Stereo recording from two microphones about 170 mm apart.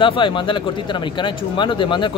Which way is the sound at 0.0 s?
30° left (ahead or behind).